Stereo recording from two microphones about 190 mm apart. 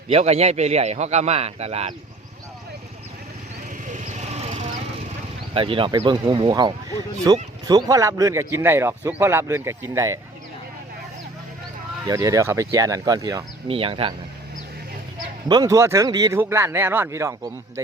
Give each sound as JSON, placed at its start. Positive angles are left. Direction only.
{"t": 0.1, "sound": "a man's voice", "side_deg": -35}
{"t": 3.8, "sound": "vehicle", "side_deg": -40}
{"t": 5.5, "sound": "a man's voice", "side_deg": -30}
{"t": 12.0, "sound": "a man's voice", "side_deg": -20}
{"t": 13.7, "sound": "speech", "side_deg": -30}
{"t": 15.4, "sound": "a man's voice", "side_deg": -20}